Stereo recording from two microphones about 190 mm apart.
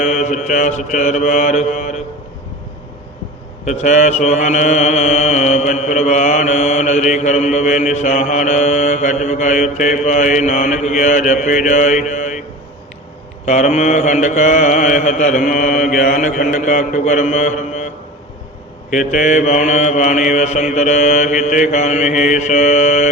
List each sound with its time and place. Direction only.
0.0 s mantra: 40° left (ahead or behind)
3.7 s mantra: 40° left (ahead or behind)
13.4 s mantra: 40° left (ahead or behind)